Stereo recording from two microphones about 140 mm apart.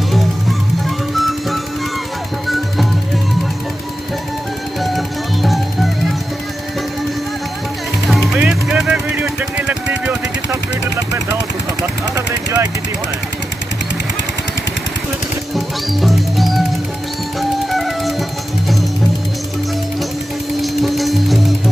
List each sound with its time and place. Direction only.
0.1 s music: centre (ahead or behind)
4.8 s music: centre (ahead or behind)
8.1 s a sound: 5° right (ahead or behind)
12.2 s vehicle: 20° right (ahead or behind)
15.5 s music: centre (ahead or behind)
20.6 s music: centre (ahead or behind)